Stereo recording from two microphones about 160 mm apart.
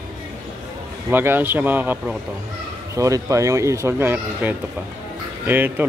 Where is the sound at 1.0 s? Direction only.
10° right (ahead or behind).